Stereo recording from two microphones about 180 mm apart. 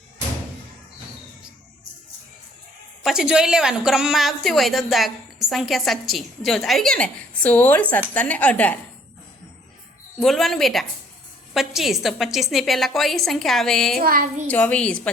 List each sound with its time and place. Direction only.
3.0 s a woman's voice: 5° right (ahead or behind)
10.2 s a woman's voice: centre (ahead or behind)
14.0 s a woman's voice: 50° right (ahead or behind)
14.4 s a woman's voice: 10° left (ahead or behind)